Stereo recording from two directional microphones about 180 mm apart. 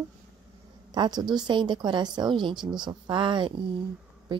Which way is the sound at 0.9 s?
25° right (ahead or behind).